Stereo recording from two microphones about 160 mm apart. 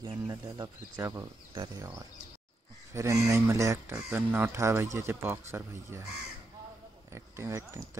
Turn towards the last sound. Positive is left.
turn(degrees=-15)  # may be behind; listen again after turning